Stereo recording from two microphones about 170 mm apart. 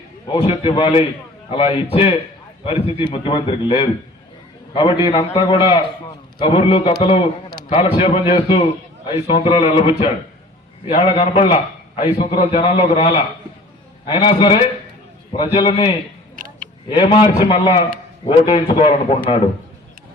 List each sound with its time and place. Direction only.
0.3 s a man's voice: 30° left (ahead or behind)
7.9 s a man's voice: 35° left (ahead or behind)
16.3 s a sound: 55° right (ahead or behind)
16.9 s a man's voice: 25° left (ahead or behind)